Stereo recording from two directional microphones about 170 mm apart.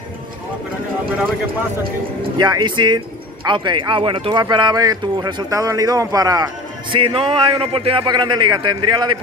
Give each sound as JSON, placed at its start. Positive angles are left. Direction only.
{"t": 2.3, "sound": "speech", "side_deg": -25}